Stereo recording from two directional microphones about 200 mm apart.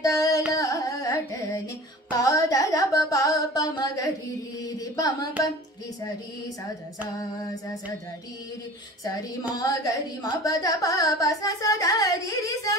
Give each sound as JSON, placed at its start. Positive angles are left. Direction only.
{"t": 0.0, "sound": "carnatic music", "side_deg": 20}
{"t": 2.1, "sound": "speech", "side_deg": 15}
{"t": 9.0, "sound": "speech", "side_deg": 15}